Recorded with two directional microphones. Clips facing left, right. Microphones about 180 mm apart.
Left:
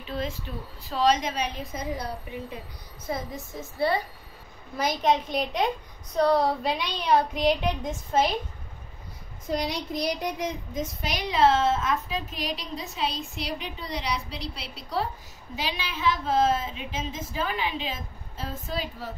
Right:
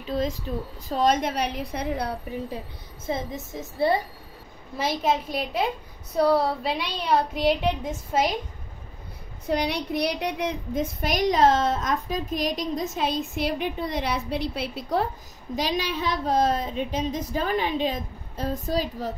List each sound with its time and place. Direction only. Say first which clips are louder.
0.1 s a woman's voice: right 5 dB; 40° right (ahead or behind); by 2.1 s 65° right (ahead or behind)
3.1 s a woman's voice: right 3 dB; 25° right (ahead or behind)
5.0 s a woman's voice: left 3 dB; 5° right (ahead or behind)
9.5 s a woman's voice: right 3 dB; 60° right (ahead or behind)
15.5 s a woman's voice: right 6 dB; 40° right (ahead or behind)